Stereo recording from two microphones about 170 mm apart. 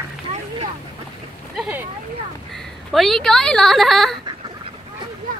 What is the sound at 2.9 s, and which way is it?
Speech, centre (ahead or behind).